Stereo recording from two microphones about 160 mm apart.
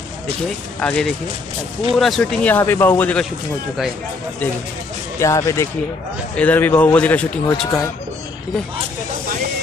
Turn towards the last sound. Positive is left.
turn(degrees=20)  # may be behind; listen again after turning